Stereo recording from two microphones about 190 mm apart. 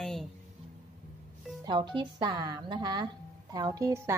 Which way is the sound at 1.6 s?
25° right (ahead or behind).